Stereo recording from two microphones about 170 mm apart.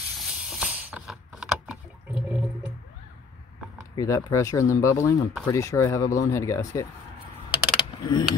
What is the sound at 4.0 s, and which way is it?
Speech, 20° left (ahead or behind).